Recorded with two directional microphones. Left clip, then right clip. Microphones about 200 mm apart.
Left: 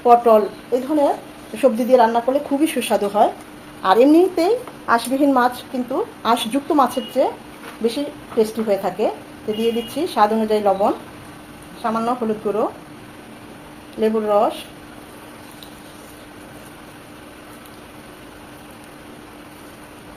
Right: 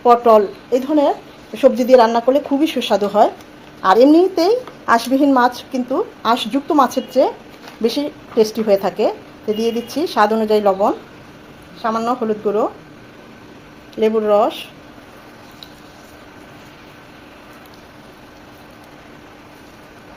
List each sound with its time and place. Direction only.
0.0 s a woman's voice: 30° right (ahead or behind)
2.6 s a woman's voice: 20° right (ahead or behind)
7.9 s a woman's voice: 40° right (ahead or behind)
14.0 s speech: 30° right (ahead or behind)